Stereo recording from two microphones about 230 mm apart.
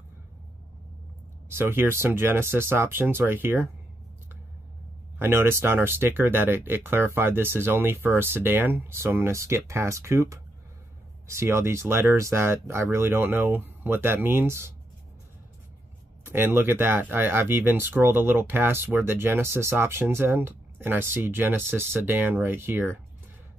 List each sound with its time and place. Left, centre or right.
1.5 s speech: centre
5.2 s speech: centre
16.3 s speech: centre